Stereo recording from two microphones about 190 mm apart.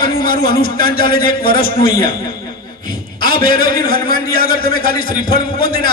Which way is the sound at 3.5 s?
50° left (ahead or behind).